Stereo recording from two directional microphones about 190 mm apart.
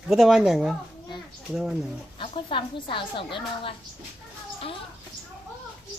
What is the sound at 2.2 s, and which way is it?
A woman's voice, 25° left (ahead or behind).